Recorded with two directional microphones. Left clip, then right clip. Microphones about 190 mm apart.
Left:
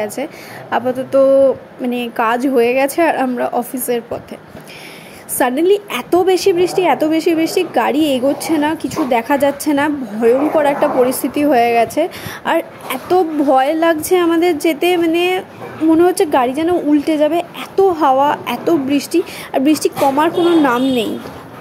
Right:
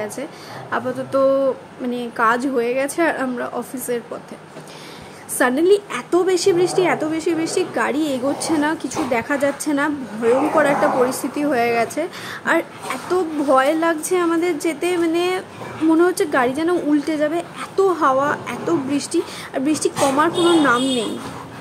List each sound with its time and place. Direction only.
0.0 s a woman's voice: 20° left (ahead or behind)
5.4 s a woman's voice: 15° left (ahead or behind)